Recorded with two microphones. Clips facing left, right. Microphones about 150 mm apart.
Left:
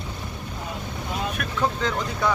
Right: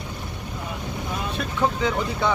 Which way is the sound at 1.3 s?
25° right (ahead or behind).